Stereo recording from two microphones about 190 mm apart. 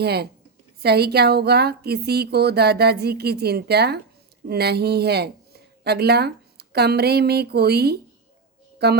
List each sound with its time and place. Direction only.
0.0 s a woman's voice: 60° right (ahead or behind)